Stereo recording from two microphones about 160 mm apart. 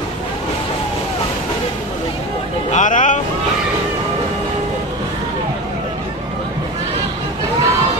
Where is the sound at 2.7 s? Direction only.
50° left (ahead or behind).